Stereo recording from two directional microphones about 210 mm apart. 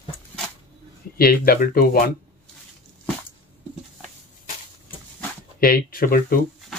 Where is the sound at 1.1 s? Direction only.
45° left (ahead or behind).